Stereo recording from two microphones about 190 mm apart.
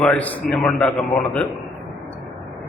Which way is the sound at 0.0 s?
5° left (ahead or behind).